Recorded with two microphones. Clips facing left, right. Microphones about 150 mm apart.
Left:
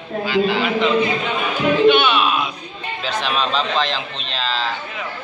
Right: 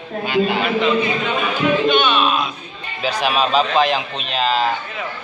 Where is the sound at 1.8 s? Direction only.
10° left (ahead or behind).